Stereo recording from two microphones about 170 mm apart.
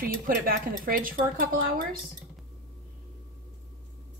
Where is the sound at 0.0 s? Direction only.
60° right (ahead or behind).